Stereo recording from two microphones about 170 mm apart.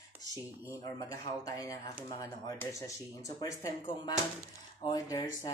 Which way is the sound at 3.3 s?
20° left (ahead or behind).